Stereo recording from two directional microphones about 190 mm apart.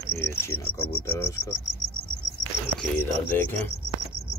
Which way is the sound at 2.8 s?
10° left (ahead or behind).